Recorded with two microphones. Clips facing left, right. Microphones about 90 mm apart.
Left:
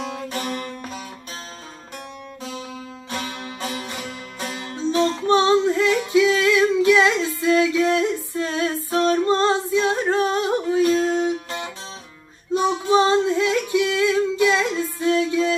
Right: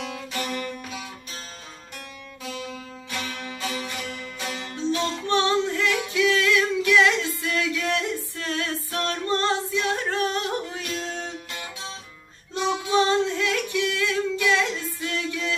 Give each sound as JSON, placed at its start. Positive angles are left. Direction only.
{"t": 3.1, "sound": "music", "side_deg": 30}
{"t": 5.3, "sound": "female singing", "side_deg": 20}
{"t": 11.1, "sound": "music", "side_deg": 20}
{"t": 12.9, "sound": "singing", "side_deg": 20}